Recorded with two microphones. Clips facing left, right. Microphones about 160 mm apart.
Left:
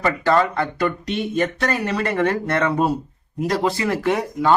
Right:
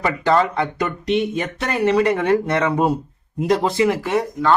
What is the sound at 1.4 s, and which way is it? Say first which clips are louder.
Speech: even; 10° right (ahead or behind).